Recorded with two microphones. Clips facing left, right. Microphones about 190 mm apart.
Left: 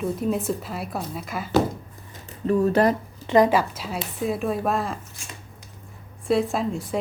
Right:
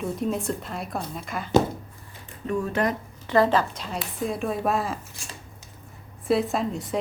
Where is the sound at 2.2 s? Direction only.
35° left (ahead or behind).